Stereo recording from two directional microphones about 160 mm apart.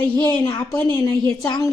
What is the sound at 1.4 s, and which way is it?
Speech, 25° left (ahead or behind).